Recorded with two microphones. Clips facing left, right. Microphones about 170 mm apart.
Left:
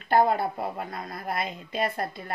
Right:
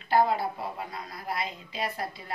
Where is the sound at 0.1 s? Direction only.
55° left (ahead or behind).